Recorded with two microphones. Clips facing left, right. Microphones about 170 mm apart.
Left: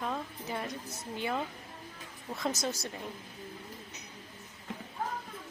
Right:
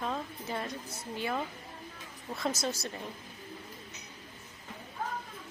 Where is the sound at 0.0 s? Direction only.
10° left (ahead or behind).